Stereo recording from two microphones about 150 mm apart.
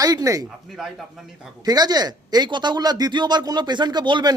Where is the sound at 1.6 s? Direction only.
25° right (ahead or behind).